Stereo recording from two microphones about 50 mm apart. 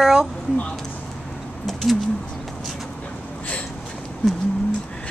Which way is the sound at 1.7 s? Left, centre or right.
Centre.